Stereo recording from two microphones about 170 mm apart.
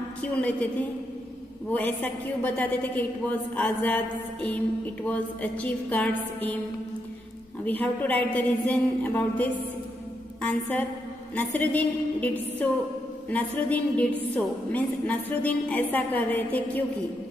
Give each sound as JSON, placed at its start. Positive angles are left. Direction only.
{"t": 0.2, "sound": "a woman's voice", "side_deg": 10}
{"t": 7.6, "sound": "a woman's voice", "side_deg": 10}